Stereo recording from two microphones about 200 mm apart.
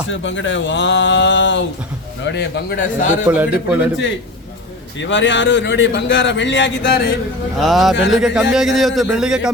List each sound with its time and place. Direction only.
0.1 s a man's voice: 70° left (ahead or behind)
3.2 s a man's voice: 10° right (ahead or behind)
4.9 s a man's voice: 65° left (ahead or behind)
7.6 s a man's voice: centre (ahead or behind)